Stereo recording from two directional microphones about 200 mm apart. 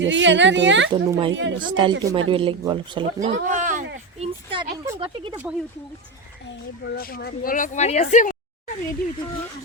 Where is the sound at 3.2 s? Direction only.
40° right (ahead or behind).